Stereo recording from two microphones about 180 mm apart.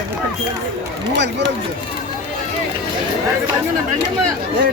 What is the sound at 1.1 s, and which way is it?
Speech, 75° right (ahead or behind).